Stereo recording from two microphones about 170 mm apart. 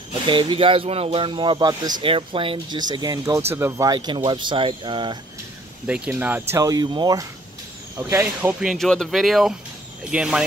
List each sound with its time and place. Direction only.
0.3 s speech: 30° right (ahead or behind)
5.9 s speech: 10° right (ahead or behind)
8.5 s speech: centre (ahead or behind)